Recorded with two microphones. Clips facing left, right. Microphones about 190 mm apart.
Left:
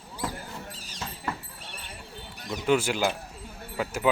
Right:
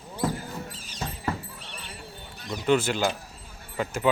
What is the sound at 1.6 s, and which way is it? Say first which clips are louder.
Clip-clop: right 1 dB; 50° left (ahead or behind).